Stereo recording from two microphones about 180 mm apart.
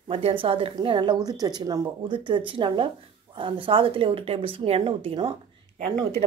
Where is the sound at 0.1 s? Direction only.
30° right (ahead or behind).